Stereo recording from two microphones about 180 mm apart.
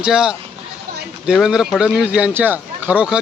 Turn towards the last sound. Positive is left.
turn(degrees=-5)  # may be behind; listen again after turning